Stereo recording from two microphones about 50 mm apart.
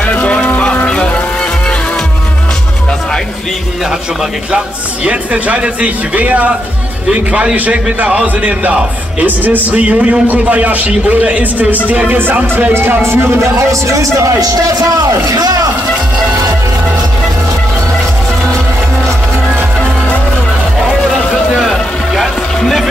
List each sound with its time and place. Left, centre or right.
0.0 s music: left
5.0 s speech: right
7.1 s speech: centre
7.5 s speech: right
12.2 s speech: right
13.0 s speech: right
21.5 s vehicle: centre
22.6 s music: centre